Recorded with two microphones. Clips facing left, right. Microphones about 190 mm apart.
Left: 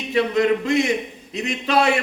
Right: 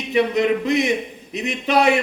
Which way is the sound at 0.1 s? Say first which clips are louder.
Even; 20° right (ahead or behind).